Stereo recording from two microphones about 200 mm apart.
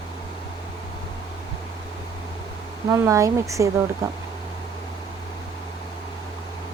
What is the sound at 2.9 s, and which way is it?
Speech, 15° right (ahead or behind).